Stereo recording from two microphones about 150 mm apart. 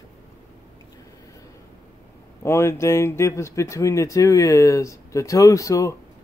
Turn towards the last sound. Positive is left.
turn(degrees=20)  # may be behind; listen again after turning